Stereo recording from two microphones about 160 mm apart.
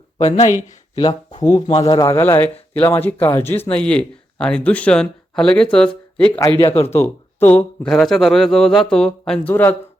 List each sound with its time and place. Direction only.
0.2 s speech: 45° left (ahead or behind)
1.4 s speech: 25° left (ahead or behind); by 6.3 s 5° left (ahead or behind)
6.6 s speech: 35° left (ahead or behind)
6.8 s speech: 15° left (ahead or behind)